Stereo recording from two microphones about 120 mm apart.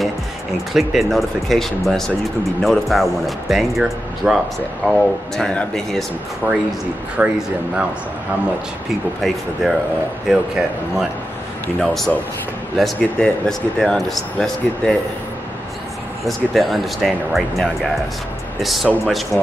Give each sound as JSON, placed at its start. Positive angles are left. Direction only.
{"t": 0.7, "sound": "speech", "side_deg": 0}
{"t": 6.4, "sound": "speech", "side_deg": -20}
{"t": 9.2, "sound": "speech", "side_deg": 0}
{"t": 16.3, "sound": "speech", "side_deg": 0}